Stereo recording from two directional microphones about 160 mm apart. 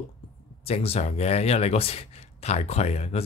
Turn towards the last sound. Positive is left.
turn(degrees=40)  # may be behind; listen again after turning